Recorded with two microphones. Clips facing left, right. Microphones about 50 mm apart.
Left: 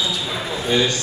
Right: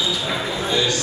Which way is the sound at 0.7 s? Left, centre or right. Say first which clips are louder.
Left 3 dB; left.